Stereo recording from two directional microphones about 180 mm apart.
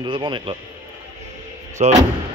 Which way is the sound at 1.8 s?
40° right (ahead or behind).